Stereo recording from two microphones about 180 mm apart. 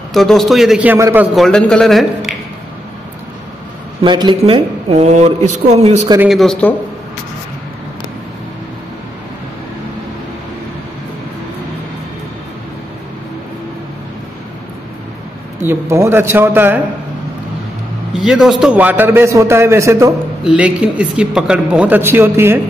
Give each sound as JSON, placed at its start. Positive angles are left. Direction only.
{"t": 0.1, "sound": "a man's voice", "side_deg": 0}
{"t": 4.0, "sound": "speech", "side_deg": -25}
{"t": 6.1, "sound": "a man's voice", "side_deg": 0}
{"t": 15.6, "sound": "a man's voice", "side_deg": -15}
{"t": 18.1, "sound": "a man's voice", "side_deg": 0}